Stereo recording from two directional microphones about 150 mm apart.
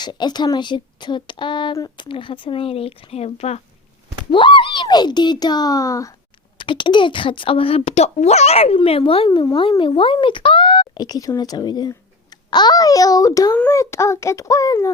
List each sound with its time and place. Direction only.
0.0 s speech: 30° left (ahead or behind); by 3.6 s 45° left (ahead or behind)
4.3 s a child's voice: 35° left (ahead or behind)
6.6 s a child's voice: 35° left (ahead or behind)